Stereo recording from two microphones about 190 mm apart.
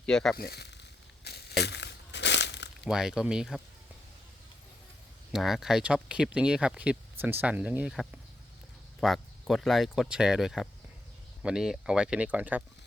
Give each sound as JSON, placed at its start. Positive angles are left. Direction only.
{"t": 0.0, "sound": "speech", "side_deg": 5}
{"t": 0.3, "sound": "a sound", "side_deg": 55}
{"t": 2.8, "sound": "speech", "side_deg": -5}
{"t": 5.3, "sound": "speech", "side_deg": 0}